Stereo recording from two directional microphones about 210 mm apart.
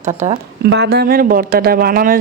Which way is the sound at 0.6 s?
55° right (ahead or behind).